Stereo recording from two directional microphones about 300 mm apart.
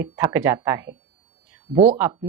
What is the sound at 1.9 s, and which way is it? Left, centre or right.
Speech, centre.